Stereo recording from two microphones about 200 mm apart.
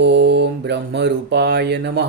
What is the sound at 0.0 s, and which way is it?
Mantra, 60° right (ahead or behind).